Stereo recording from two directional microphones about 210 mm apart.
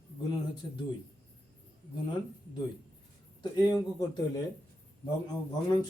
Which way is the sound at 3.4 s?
20° left (ahead or behind).